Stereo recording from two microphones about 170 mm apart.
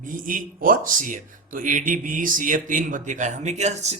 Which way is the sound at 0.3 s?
55° right (ahead or behind).